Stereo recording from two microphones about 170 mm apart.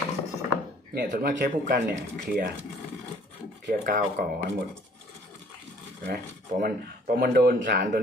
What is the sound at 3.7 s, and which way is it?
Speech, 65° right (ahead or behind).